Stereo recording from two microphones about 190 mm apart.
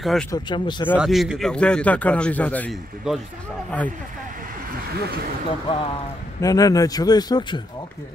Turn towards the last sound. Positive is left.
turn(degrees=25)  # may be behind; listen again after turning